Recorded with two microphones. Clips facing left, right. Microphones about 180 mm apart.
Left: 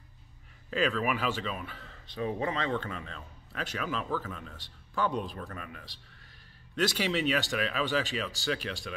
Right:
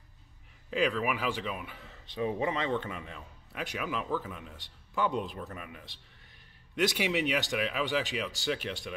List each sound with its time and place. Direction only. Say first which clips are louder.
0.7 s speech: even; 15° right (ahead or behind)